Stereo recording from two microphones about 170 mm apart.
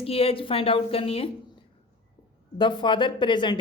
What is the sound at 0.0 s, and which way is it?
Speech, 35° left (ahead or behind).